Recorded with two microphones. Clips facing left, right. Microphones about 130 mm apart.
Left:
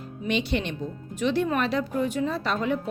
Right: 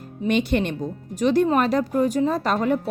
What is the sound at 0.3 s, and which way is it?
Speech, 50° right (ahead or behind).